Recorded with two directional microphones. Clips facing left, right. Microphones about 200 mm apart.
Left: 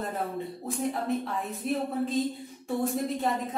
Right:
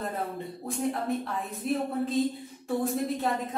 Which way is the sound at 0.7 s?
Centre (ahead or behind).